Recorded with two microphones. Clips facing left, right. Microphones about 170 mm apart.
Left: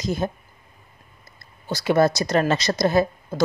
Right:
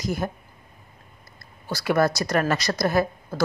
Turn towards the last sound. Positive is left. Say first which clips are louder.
# left 3 dB
turn(degrees=20)  # may be behind; listen again after turning